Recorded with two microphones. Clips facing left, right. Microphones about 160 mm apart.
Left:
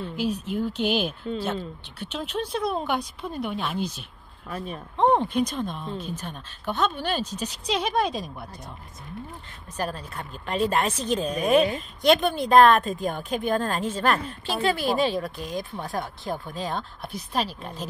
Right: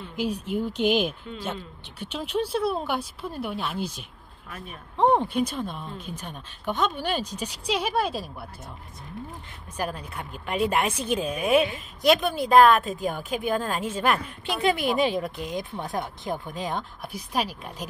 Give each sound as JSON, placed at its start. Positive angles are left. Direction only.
{"t": 0.2, "sound": "a woman's voice", "side_deg": -10}
{"t": 4.5, "sound": "speech", "side_deg": 35}
{"t": 4.9, "sound": "a woman's voice", "side_deg": -10}
{"t": 9.8, "sound": "a woman's voice", "side_deg": -10}